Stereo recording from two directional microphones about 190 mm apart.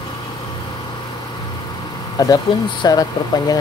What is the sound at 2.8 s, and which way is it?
Speech, 20° left (ahead or behind).